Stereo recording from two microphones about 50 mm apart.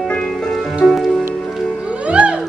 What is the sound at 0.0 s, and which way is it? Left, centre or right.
Music, centre.